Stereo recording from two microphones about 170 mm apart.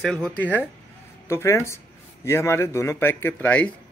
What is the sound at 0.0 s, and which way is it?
Speech, 5° left (ahead or behind).